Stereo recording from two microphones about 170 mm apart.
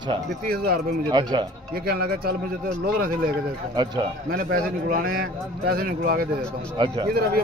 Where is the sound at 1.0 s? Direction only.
25° right (ahead or behind).